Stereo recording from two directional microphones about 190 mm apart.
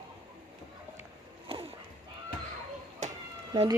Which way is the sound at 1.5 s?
30° right (ahead or behind).